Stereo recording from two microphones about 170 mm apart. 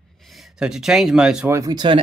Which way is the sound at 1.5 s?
25° right (ahead or behind).